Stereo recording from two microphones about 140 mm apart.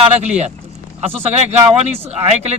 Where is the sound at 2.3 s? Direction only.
50° right (ahead or behind).